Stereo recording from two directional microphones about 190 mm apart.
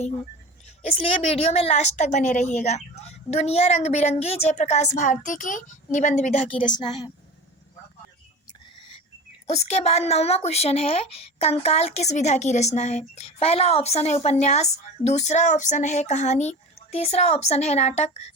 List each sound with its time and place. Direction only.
0.8 s a woman's voice: 30° left (ahead or behind)
9.5 s speech: 35° left (ahead or behind)